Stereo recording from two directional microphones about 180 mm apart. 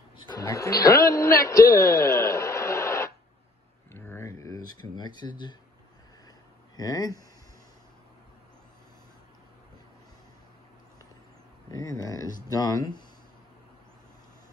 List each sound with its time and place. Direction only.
0.3 s a man's voice: 15° left (ahead or behind)
3.9 s a sound: 15° left (ahead or behind)
6.8 s speech: 20° left (ahead or behind)
11.7 s speech: 20° left (ahead or behind)